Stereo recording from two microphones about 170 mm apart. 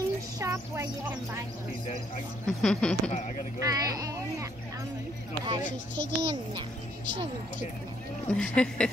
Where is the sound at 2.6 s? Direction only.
5° left (ahead or behind).